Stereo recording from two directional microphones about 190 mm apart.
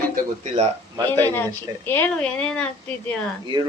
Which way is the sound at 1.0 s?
10° left (ahead or behind).